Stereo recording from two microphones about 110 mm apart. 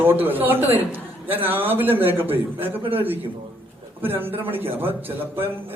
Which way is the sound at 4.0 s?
20° right (ahead or behind).